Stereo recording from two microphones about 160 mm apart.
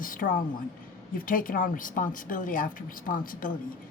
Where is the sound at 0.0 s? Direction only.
60° left (ahead or behind).